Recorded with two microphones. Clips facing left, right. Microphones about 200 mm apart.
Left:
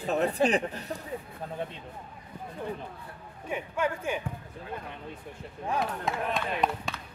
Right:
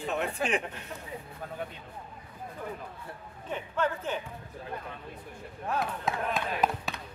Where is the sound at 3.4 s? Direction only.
10° left (ahead or behind).